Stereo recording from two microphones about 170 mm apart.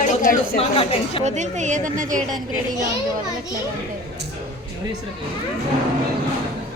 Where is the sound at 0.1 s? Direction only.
50° left (ahead or behind).